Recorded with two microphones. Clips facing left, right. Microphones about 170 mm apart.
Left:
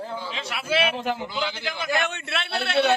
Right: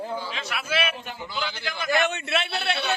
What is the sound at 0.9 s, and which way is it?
Speech, 90° left.